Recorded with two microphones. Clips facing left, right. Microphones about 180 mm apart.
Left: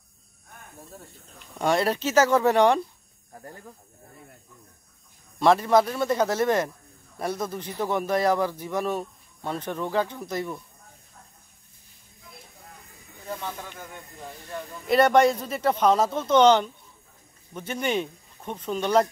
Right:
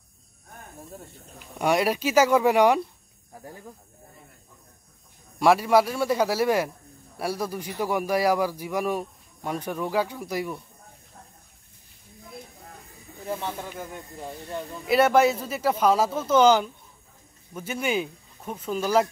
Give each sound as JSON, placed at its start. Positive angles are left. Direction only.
{"t": 1.4, "sound": "a man's voice", "side_deg": -10}
{"t": 5.4, "sound": "a man's voice", "side_deg": -10}
{"t": 13.7, "sound": "speech", "side_deg": -25}
{"t": 14.9, "sound": "a man's voice", "side_deg": -5}